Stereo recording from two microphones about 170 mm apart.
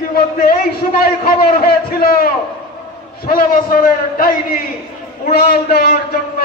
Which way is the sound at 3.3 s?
55° left (ahead or behind).